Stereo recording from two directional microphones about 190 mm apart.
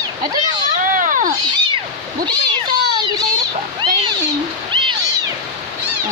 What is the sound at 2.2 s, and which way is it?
Cat, 20° right (ahead or behind).